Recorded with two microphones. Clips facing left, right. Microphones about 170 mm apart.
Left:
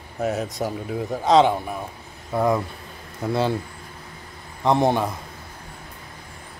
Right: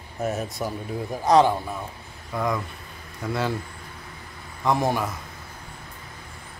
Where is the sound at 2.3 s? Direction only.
30° left (ahead or behind).